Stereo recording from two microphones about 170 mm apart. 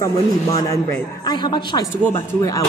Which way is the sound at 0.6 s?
20° left (ahead or behind).